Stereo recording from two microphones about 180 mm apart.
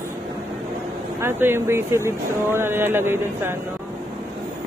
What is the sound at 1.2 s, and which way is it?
Speech, 15° right (ahead or behind).